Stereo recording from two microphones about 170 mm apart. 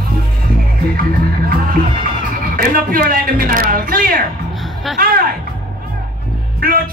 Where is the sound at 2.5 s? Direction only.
60° right (ahead or behind).